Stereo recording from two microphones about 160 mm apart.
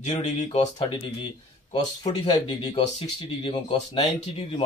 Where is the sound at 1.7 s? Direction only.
25° left (ahead or behind).